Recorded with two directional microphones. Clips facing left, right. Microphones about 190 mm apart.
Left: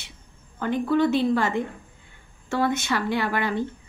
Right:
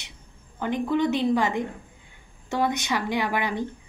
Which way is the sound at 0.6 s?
15° right (ahead or behind).